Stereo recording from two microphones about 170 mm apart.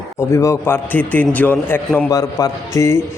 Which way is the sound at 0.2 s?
15° left (ahead or behind).